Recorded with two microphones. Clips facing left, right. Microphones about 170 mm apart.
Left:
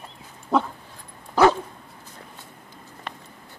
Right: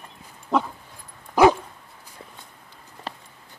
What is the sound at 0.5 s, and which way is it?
Dog, centre (ahead or behind).